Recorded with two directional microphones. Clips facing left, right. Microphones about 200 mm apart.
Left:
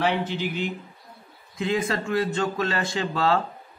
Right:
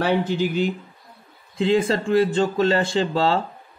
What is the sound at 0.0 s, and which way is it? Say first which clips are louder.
Speech: right 4 dB; 40° right (ahead or behind).